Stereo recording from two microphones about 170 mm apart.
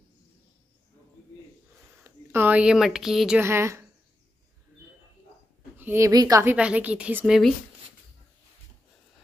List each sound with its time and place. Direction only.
2.0 s speech: 10° right (ahead or behind)
3.4 s a woman's voice: 15° right (ahead or behind)
5.8 s a woman's voice: 15° right (ahead or behind)
6.5 s a woman's voice: 5° right (ahead or behind)